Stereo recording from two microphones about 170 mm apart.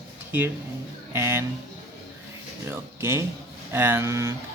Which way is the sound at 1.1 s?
15° right (ahead or behind).